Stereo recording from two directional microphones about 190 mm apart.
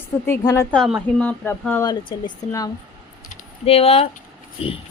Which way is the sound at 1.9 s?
25° left (ahead or behind).